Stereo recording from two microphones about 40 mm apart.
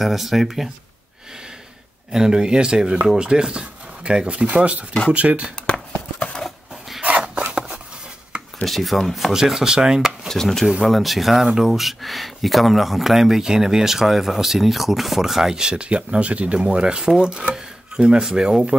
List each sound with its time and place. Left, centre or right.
0.0 s speech: centre
2.1 s speech: centre; by 5.5 s right
5.7 s clip-clop: left
7.0 s a sound: right
8.6 s speech: centre
9.3 s speech: centre
10.2 s speech: centre
10.8 s speech: centre
11.4 s speech: centre
11.7 s speech: centre; by 16.5 s right
16.5 s speech: right